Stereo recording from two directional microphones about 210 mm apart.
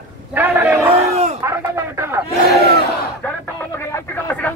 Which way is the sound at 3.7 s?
10° left (ahead or behind).